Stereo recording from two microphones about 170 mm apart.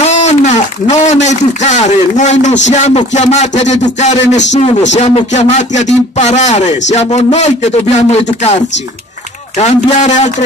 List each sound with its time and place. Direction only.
0.0 s a man's voice: 45° left (ahead or behind)
9.6 s speech: 40° left (ahead or behind)